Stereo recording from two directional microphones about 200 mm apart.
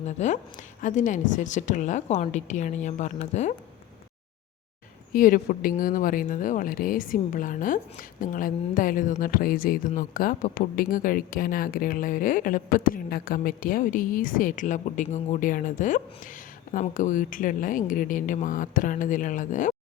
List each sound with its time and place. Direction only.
0.0 s a woman's voice: 35° left (ahead or behind)
5.1 s speech: 45° left (ahead or behind)